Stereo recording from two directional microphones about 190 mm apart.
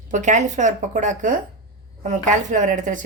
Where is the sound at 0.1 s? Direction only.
40° right (ahead or behind).